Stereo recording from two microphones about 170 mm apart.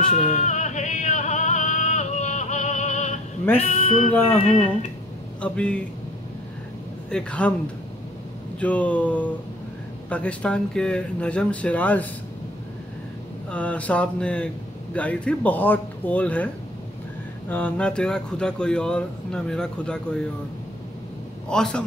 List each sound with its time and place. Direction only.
0.1 s music: 45° left (ahead or behind)
3.5 s speech: 40° left (ahead or behind)
5.4 s speech: 5° left (ahead or behind)
7.1 s speech: 5° left (ahead or behind)
8.5 s speech: 10° left (ahead or behind)
13.5 s speech: 10° left (ahead or behind)
17.5 s speech: 10° left (ahead or behind)
21.5 s speech: 5° left (ahead or behind)